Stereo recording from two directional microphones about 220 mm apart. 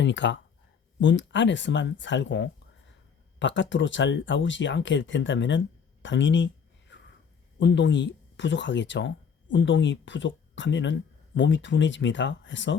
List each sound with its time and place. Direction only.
0.0 s speech: 55° left (ahead or behind)